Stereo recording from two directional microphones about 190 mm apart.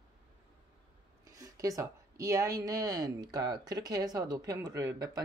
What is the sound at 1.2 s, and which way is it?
Speech, 20° right (ahead or behind).